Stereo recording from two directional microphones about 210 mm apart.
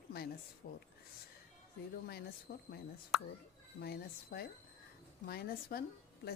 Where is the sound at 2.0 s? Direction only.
50° left (ahead or behind).